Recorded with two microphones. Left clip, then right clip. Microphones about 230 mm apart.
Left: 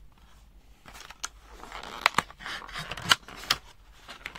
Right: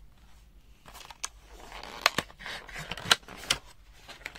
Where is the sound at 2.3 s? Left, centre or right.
Centre.